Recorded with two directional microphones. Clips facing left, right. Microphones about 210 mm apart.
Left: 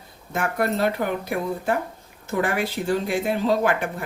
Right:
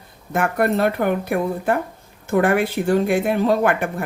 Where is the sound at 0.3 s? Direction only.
55° right (ahead or behind).